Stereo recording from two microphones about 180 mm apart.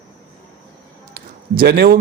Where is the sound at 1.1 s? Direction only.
60° right (ahead or behind).